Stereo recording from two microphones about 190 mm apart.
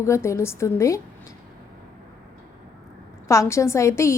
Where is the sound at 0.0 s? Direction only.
15° left (ahead or behind).